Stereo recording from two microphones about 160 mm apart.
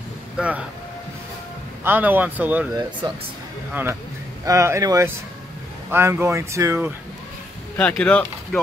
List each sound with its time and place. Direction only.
0.4 s speech: 5° right (ahead or behind)
1.9 s speech: 10° right (ahead or behind)
3.0 s speech: 30° right (ahead or behind)
4.5 s speech: 20° right (ahead or behind)
7.7 s speech: 5° left (ahead or behind)